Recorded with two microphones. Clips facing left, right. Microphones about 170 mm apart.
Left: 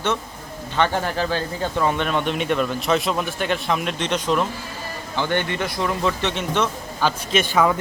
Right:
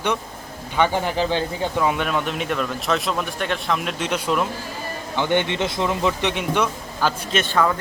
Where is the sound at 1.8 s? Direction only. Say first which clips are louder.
Left 1 dB; 5° right (ahead or behind).